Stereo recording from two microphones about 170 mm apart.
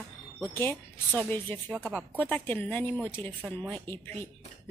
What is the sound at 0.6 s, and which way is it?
Speech, 10° left (ahead or behind).